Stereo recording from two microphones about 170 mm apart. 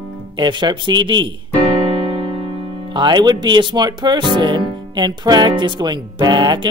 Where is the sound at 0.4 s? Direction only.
25° right (ahead or behind).